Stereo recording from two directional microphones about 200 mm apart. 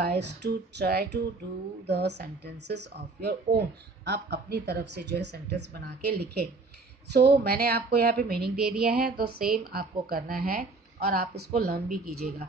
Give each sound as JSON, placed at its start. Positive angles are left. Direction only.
{"t": 0.0, "sound": "a woman's voice", "side_deg": -55}